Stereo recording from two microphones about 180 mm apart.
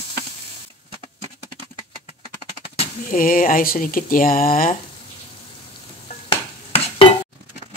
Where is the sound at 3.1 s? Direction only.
50° left (ahead or behind).